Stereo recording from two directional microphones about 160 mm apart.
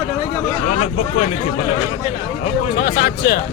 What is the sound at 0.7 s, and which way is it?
Speech, 40° left (ahead or behind).